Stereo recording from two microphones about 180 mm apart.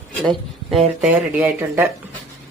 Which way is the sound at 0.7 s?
5° right (ahead or behind).